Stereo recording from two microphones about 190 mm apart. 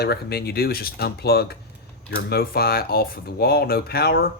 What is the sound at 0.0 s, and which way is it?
Speech, 55° left (ahead or behind).